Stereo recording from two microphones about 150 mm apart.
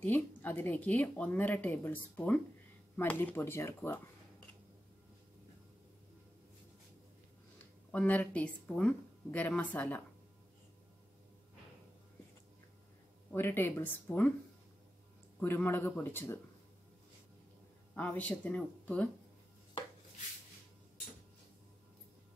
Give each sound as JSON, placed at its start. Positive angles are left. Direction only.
{"t": 0.0, "sound": "speech", "side_deg": 15}
{"t": 7.9, "sound": "speech", "side_deg": 10}
{"t": 13.3, "sound": "speech", "side_deg": 15}
{"t": 15.4, "sound": "speech", "side_deg": 15}
{"t": 17.9, "sound": "speech", "side_deg": 10}